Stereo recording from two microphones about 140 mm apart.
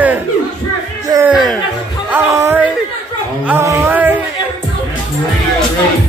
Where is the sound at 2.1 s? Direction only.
20° right (ahead or behind).